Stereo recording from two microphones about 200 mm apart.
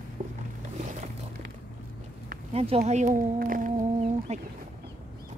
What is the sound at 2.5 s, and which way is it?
Speech, 30° right (ahead or behind).